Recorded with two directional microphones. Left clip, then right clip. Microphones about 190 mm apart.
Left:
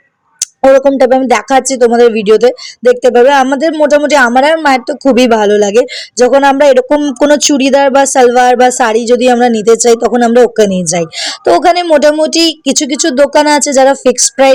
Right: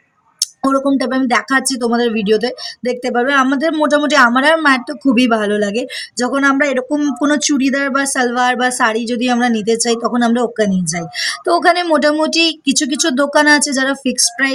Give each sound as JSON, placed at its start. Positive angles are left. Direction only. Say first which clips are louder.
{"t": 0.3, "sound": "speech", "louder": "left 10 dB", "side_deg": 25}